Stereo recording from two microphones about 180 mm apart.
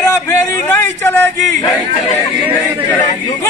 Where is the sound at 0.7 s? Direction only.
10° left (ahead or behind).